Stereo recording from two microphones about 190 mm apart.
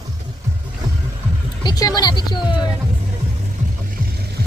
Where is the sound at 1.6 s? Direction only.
20° left (ahead or behind).